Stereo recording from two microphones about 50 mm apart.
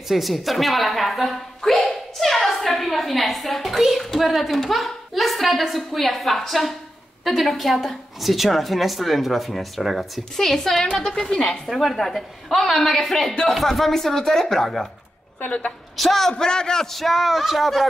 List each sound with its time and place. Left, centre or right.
0.1 s a woman's voice: centre
1.6 s a sound: centre
7.2 s a woman's voice: centre
15.4 s a woman's voice: left
16.0 s a woman's voice: centre